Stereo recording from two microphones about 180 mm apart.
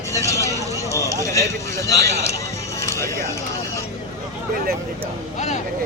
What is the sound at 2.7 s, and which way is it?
Music, 15° left (ahead or behind).